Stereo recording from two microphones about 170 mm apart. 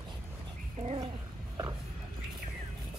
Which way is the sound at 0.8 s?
40° right (ahead or behind).